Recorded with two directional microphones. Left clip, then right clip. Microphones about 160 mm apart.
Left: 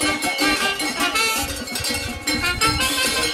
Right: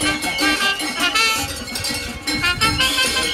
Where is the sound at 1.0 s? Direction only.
55° left (ahead or behind).